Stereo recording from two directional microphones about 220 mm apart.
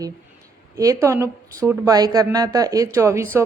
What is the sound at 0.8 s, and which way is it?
A woman's voice, 15° right (ahead or behind).